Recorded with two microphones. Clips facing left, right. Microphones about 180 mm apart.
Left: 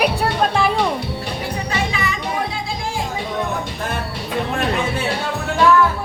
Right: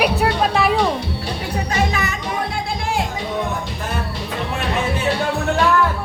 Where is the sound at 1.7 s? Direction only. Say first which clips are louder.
Right 3 dB; 45° right (ahead or behind).